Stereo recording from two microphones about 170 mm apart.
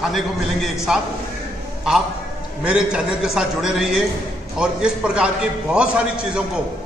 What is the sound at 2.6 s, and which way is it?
A man's voice, 5° right (ahead or behind).